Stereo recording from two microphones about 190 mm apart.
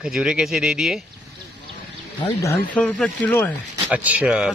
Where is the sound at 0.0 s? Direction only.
5° right (ahead or behind).